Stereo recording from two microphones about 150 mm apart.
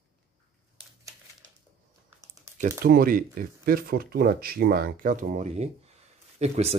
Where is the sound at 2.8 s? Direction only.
85° right; by 6.7 s 45° right (ahead or behind).